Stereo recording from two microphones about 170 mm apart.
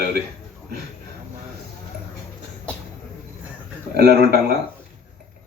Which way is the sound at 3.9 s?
65° right (ahead or behind).